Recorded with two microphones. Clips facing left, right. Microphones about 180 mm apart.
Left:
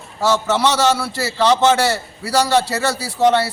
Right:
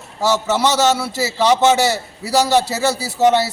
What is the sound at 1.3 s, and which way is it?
Speech, 10° right (ahead or behind).